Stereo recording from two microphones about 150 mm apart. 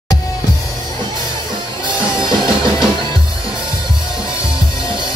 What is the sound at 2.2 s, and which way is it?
Music, 30° right (ahead or behind).